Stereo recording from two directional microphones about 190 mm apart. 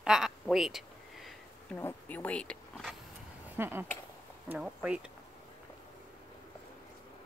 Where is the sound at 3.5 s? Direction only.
10° right (ahead or behind).